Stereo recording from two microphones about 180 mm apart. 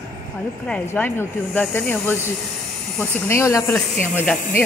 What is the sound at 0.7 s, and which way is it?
Speech, 10° left (ahead or behind).